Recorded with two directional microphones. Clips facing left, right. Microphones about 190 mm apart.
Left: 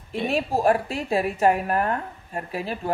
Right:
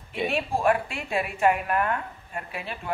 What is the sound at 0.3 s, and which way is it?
A woman's voice, 40° left (ahead or behind).